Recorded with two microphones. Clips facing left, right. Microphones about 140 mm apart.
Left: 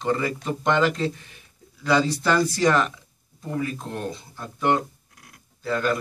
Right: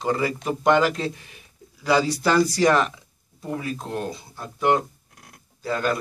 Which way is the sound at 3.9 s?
5° right (ahead or behind).